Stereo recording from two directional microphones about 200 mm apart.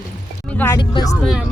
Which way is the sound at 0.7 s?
20° left (ahead or behind).